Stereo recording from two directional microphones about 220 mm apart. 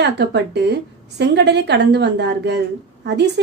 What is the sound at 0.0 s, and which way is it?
A woman's voice, 50° right (ahead or behind).